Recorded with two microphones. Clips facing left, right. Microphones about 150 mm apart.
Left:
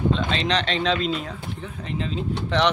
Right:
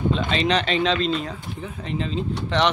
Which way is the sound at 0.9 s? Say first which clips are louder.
Right 2 dB; 10° left (ahead or behind).